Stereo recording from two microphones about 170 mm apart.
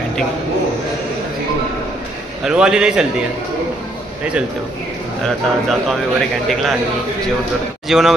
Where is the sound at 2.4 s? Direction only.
5° right (ahead or behind).